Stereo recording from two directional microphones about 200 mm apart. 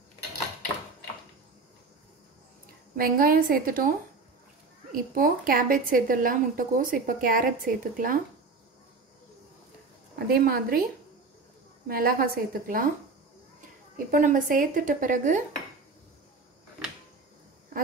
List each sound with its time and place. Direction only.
3.0 s a woman's voice: 45° right (ahead or behind)
4.9 s a woman's voice: 45° right (ahead or behind)
10.1 s a woman's voice: 50° right (ahead or behind)
11.9 s a woman's voice: 50° right (ahead or behind)
13.9 s a woman's voice: 40° right (ahead or behind)